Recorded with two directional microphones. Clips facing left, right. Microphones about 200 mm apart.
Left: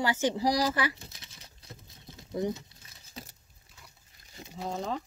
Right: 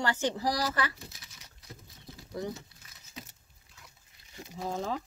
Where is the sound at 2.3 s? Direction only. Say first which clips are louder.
Left 5 dB; 25° left (ahead or behind).